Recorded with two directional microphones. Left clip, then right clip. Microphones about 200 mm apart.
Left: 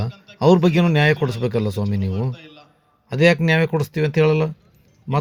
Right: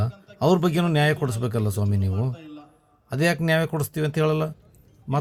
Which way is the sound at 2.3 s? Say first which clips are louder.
Even; 65° right (ahead or behind).